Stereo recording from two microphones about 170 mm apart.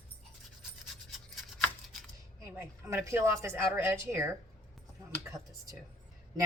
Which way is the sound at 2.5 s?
15° right (ahead or behind).